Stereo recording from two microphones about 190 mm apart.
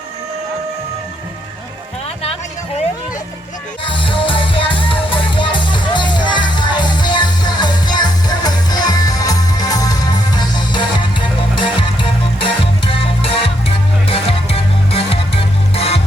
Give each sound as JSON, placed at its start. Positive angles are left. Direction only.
{"t": 2.2, "sound": "a sound", "side_deg": 30}
{"t": 3.8, "sound": "music", "side_deg": 25}
{"t": 12.4, "sound": "music", "side_deg": 30}